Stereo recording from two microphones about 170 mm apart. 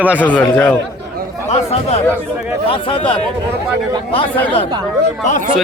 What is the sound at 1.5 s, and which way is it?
Speech, 40° left (ahead or behind).